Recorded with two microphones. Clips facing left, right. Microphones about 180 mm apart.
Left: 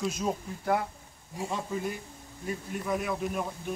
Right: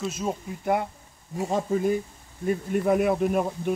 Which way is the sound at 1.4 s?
45° right (ahead or behind).